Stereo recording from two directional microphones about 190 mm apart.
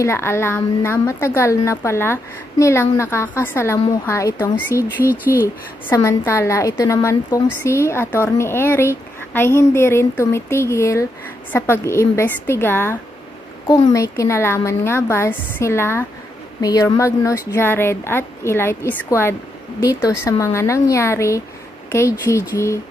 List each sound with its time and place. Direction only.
0.0 s speech: 15° left (ahead or behind)
5.0 s speech: 10° right (ahead or behind)
5.9 s speech: 15° left (ahead or behind)